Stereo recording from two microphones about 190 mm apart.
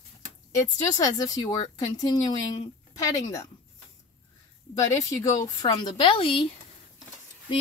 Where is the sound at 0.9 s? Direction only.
20° left (ahead or behind).